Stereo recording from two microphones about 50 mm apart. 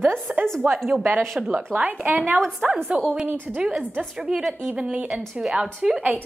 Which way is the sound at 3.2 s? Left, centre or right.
Right.